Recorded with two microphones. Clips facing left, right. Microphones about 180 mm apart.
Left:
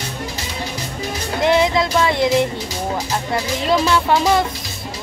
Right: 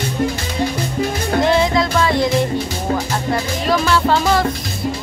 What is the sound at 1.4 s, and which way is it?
Music, 20° left (ahead or behind).